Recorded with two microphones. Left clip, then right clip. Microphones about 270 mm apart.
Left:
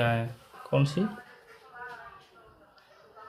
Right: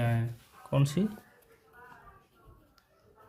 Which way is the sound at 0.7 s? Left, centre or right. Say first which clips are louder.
Left 4 dB; right.